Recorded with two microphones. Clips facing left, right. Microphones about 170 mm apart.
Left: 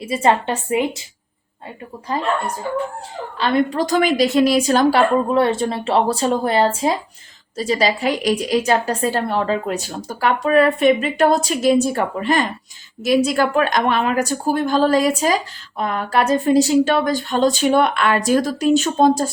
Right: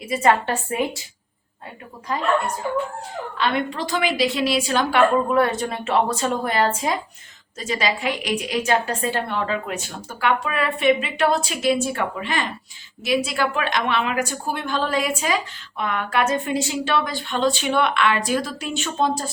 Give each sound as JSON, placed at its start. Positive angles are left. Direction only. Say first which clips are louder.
{"t": 0.0, "sound": "a woman's voice", "louder": "left 2 dB", "side_deg": 30}
{"t": 3.3, "sound": "a woman's voice", "louder": "left 6 dB", "side_deg": 35}